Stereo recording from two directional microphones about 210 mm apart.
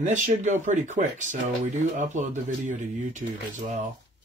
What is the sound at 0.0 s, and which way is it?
Speech, 35° right (ahead or behind).